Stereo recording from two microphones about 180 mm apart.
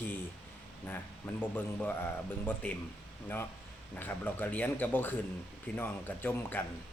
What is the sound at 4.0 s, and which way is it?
Speech, 10° left (ahead or behind).